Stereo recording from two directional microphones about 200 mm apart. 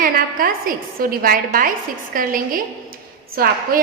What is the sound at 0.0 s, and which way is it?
A woman's voice, 45° right (ahead or behind).